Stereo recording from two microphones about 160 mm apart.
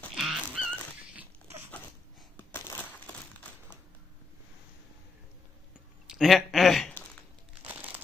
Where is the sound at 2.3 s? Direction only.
15° left (ahead or behind).